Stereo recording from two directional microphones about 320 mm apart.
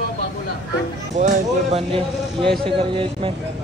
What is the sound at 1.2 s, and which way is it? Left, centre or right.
Speech, centre.